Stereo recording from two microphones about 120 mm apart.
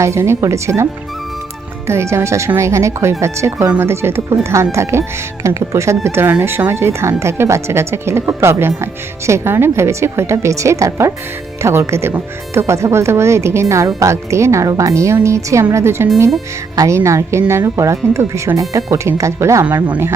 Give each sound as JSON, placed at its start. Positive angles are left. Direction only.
{"t": 0.0, "sound": "a woman's voice", "side_deg": -25}
{"t": 1.9, "sound": "a woman's voice", "side_deg": -20}